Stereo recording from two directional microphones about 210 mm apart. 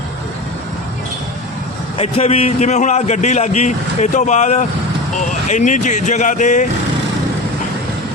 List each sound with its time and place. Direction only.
2.0 s a man's voice: 30° left (ahead or behind)